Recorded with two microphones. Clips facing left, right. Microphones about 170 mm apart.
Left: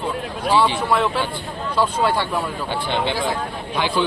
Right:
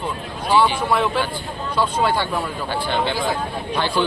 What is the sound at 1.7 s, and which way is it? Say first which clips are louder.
Speech: even; centre (ahead or behind).